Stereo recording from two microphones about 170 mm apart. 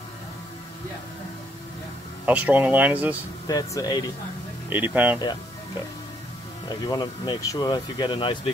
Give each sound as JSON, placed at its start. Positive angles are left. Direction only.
{"t": 2.2, "sound": "speech", "side_deg": -10}
{"t": 3.4, "sound": "speech", "side_deg": 20}
{"t": 4.6, "sound": "speech", "side_deg": -10}
{"t": 6.7, "sound": "speech", "side_deg": 25}